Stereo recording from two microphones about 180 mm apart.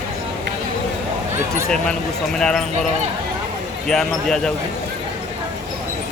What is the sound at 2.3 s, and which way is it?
Speech, 5° left (ahead or behind).